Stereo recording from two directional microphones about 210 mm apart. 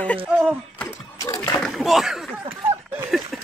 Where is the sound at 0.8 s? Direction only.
15° left (ahead or behind).